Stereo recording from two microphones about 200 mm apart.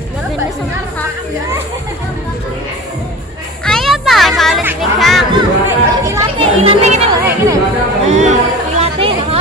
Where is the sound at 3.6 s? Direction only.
Centre (ahead or behind).